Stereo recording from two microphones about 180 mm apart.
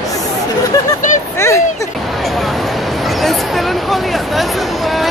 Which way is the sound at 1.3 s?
15° left (ahead or behind).